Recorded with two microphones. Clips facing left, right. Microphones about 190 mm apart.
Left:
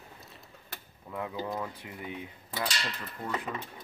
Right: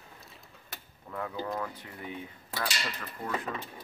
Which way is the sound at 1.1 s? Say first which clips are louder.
Even; 15° left (ahead or behind).